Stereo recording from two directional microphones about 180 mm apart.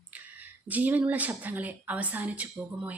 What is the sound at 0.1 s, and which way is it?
A woman's voice, 10° right (ahead or behind).